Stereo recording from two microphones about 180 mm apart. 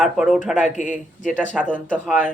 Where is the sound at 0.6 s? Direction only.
45° left (ahead or behind).